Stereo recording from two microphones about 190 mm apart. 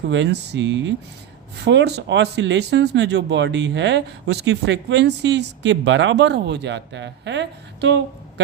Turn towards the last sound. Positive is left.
turn(degrees=-65)  # may be behind; listen again after turning